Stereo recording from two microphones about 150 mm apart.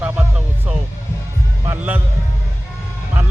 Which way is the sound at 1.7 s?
15° right (ahead or behind).